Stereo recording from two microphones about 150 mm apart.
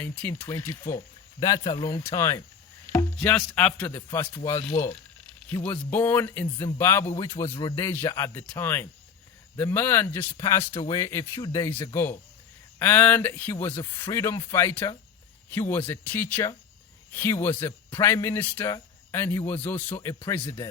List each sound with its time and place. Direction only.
0.0 s a man's voice: 10° left (ahead or behind)
2.9 s a sound: 15° left (ahead or behind)
3.5 s a man's voice: 10° left (ahead or behind)
4.4 s a man's voice: 25° left (ahead or behind)
12.8 s a man's voice: 10° left (ahead or behind)